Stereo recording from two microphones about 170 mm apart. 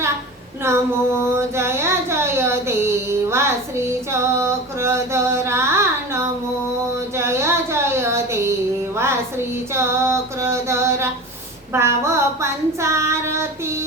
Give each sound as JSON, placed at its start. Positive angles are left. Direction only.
{"t": 0.6, "sound": "female singing", "side_deg": -15}
{"t": 1.3, "sound": "a sound", "side_deg": -15}
{"t": 7.2, "sound": "music", "side_deg": -15}
{"t": 9.7, "sound": "female singing", "side_deg": -15}
{"t": 11.7, "sound": "child singing", "side_deg": -15}